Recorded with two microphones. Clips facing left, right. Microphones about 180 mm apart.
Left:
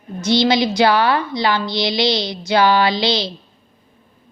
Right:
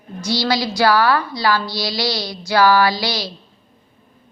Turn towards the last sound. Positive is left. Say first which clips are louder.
# left 2 dB
turn(degrees=25)  # may be behind; listen again after turning